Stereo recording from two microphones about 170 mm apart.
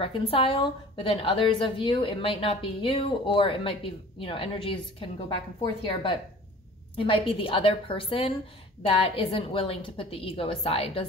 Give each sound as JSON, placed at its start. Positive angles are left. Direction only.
{"t": 0.0, "sound": "a woman's voice", "side_deg": 30}
{"t": 7.0, "sound": "a woman's voice", "side_deg": 30}